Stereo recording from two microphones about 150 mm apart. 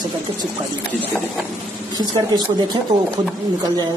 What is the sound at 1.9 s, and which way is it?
A man's voice, 25° right (ahead or behind).